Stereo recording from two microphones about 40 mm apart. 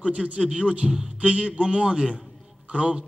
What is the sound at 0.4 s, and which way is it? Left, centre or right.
A man's voice, centre.